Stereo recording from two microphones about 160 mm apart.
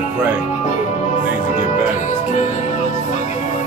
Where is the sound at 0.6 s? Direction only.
45° left (ahead or behind).